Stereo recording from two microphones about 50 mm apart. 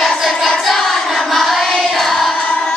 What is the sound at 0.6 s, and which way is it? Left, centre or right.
Choir, centre.